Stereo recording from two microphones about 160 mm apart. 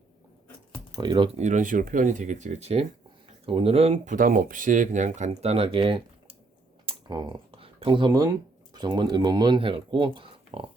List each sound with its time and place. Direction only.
0.9 s speech: 25° right (ahead or behind)
1.4 s speech: 50° right (ahead or behind); by 6.0 s 35° right (ahead or behind)
6.8 s computer keyboard: 30° right (ahead or behind)
8.7 s speech: 30° right (ahead or behind)